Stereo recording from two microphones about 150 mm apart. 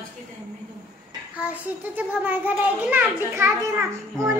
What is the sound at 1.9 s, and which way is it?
A woman's voice, 10° right (ahead or behind).